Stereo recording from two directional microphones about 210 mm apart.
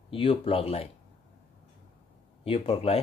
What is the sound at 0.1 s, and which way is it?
Speech, 25° left (ahead or behind).